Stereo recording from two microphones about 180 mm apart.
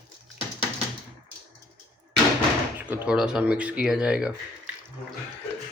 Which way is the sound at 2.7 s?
10° right (ahead or behind).